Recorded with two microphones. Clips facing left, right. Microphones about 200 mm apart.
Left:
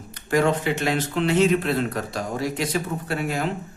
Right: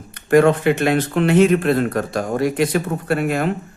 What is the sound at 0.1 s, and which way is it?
A man's voice, 55° right (ahead or behind).